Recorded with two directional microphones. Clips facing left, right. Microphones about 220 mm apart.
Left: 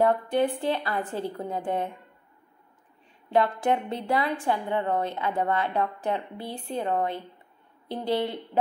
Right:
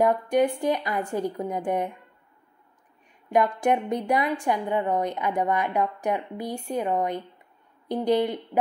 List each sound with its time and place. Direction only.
0.0 s a woman's voice: 15° right (ahead or behind)
3.3 s a woman's voice: 15° right (ahead or behind)